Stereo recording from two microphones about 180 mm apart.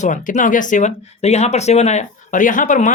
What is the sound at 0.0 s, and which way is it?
Speech, 45° left (ahead or behind).